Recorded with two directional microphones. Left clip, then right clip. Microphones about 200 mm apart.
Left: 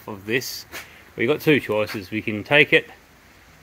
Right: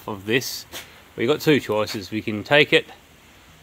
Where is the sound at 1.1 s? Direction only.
5° left (ahead or behind).